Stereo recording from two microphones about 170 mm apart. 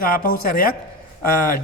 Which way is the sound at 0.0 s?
60° left (ahead or behind).